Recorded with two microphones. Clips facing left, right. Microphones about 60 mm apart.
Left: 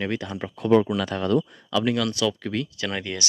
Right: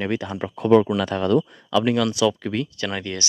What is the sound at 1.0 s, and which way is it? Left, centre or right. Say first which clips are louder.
Speech: right 3 dB; right.